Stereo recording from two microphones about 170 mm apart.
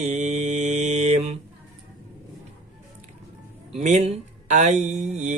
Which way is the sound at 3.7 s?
40° right (ahead or behind).